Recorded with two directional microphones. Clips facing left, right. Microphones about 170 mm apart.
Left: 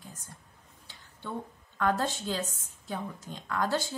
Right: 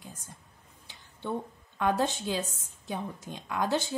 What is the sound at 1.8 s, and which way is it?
A woman's voice, 20° right (ahead or behind).